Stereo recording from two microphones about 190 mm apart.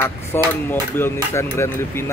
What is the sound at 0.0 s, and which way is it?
Speech, 10° left (ahead or behind).